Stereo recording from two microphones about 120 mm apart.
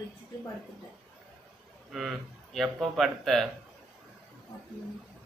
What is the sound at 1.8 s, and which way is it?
A man's voice, centre (ahead or behind).